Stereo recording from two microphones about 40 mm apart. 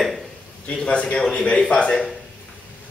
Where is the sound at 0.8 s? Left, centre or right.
Left.